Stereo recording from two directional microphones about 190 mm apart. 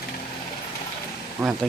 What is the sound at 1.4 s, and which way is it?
Speech, 10° right (ahead or behind).